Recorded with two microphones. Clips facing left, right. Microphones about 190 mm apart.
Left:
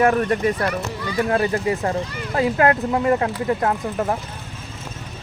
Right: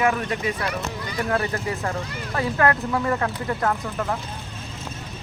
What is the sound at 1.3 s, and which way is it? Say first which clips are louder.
Speech: left 4 dB; 25° left (ahead or behind).